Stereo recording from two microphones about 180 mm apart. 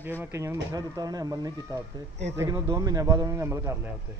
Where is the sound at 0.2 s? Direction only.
15° right (ahead or behind).